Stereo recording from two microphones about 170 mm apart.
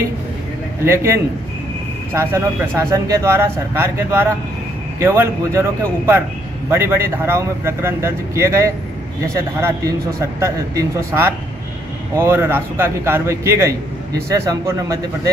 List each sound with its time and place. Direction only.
0.8 s a man's voice: 15° right (ahead or behind)